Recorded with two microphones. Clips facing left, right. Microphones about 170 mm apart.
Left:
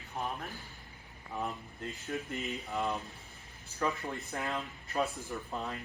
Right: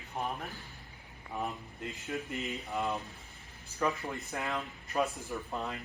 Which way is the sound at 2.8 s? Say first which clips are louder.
Even; centre (ahead or behind).